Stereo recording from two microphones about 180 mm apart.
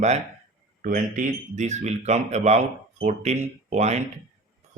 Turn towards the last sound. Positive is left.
turn(degrees=-40)  # may be behind; listen again after turning